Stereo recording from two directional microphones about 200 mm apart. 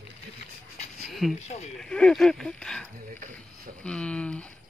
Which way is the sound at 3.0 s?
45° right (ahead or behind).